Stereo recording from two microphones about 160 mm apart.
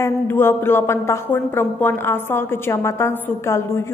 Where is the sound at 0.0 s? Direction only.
15° left (ahead or behind).